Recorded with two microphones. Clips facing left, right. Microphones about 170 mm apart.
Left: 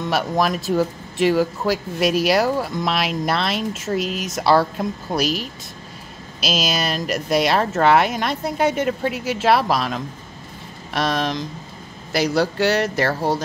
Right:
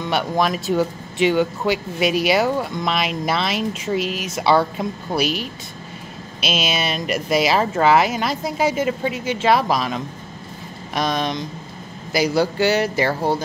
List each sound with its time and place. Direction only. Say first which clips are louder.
0.0 s speech: even; centre (ahead or behind)